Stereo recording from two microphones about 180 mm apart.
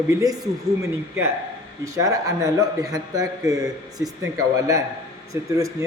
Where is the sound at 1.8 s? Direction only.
15° right (ahead or behind).